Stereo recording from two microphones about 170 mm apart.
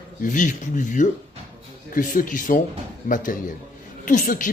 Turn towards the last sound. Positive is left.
turn(degrees=50)  # may be behind; listen again after turning